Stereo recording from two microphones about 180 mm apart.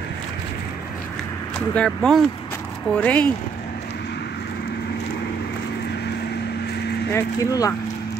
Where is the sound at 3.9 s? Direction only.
65° left (ahead or behind).